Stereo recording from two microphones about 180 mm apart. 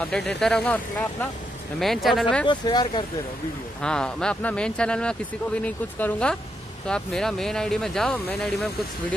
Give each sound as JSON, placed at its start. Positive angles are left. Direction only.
{"t": 0.0, "sound": "speech", "side_deg": 5}
{"t": 2.4, "sound": "speech", "side_deg": 25}
{"t": 3.8, "sound": "speech", "side_deg": 5}